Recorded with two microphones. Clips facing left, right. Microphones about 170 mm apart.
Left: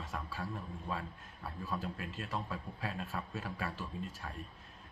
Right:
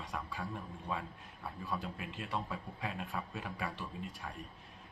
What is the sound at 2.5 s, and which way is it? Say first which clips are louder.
A man's voice: even; 15° right (ahead or behind).